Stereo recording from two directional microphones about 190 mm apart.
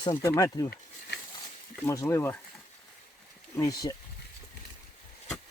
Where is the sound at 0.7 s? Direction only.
60° left (ahead or behind).